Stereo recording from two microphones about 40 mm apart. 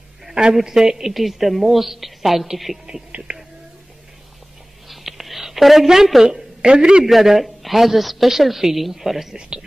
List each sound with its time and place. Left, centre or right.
0.3 s speech: right
0.6 s a woman's voice: centre
3.1 s a sound: right
4.8 s a sound: centre
6.2 s speech: right
7.1 s a woman's voice: centre
9.3 s speech: centre